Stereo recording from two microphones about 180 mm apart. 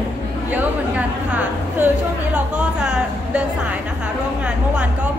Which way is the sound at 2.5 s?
5° right (ahead or behind).